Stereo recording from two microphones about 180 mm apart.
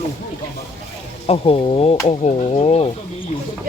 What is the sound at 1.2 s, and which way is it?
Speech, 35° left (ahead or behind).